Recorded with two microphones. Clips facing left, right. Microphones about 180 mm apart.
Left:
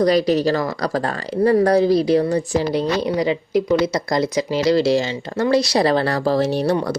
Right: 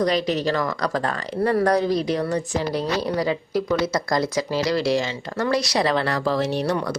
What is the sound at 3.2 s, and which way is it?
Speech, 20° left (ahead or behind).